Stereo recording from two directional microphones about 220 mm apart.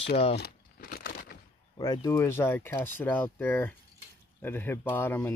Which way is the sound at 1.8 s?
15° left (ahead or behind).